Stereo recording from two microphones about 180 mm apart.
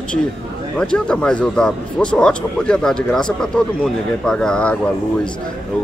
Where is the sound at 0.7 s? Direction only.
5° left (ahead or behind).